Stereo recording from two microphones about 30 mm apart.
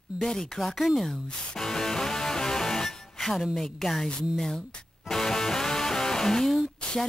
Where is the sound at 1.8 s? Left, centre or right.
Centre.